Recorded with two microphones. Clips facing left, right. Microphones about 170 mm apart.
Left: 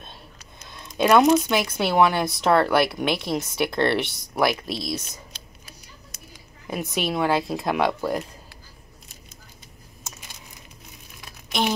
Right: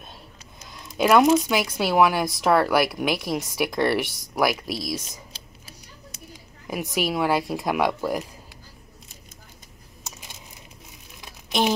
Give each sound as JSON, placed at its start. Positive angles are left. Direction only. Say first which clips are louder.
{"t": 0.7, "sound": "speech", "louder": "even", "side_deg": -5}
{"t": 6.7, "sound": "speech", "louder": "right 1 dB", "side_deg": -10}
{"t": 11.1, "sound": "a sound", "louder": "right 2 dB", "side_deg": -15}